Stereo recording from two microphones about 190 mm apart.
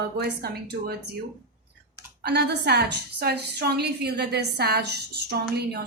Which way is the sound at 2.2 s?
60° right (ahead or behind).